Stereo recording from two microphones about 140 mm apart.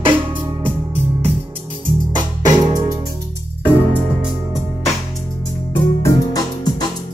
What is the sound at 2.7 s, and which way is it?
Music, 25° right (ahead or behind).